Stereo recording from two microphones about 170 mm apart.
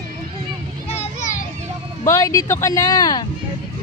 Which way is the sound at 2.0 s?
15° left (ahead or behind).